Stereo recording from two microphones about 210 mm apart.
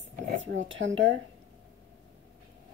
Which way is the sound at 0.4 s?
60° right (ahead or behind).